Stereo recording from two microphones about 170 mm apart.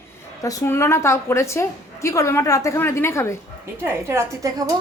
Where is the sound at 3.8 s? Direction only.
15° right (ahead or behind).